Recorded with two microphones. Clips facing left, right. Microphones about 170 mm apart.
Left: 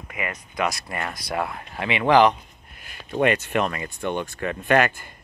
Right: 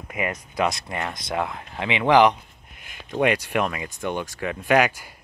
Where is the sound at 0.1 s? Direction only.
30° right (ahead or behind); by 4.7 s 5° right (ahead or behind).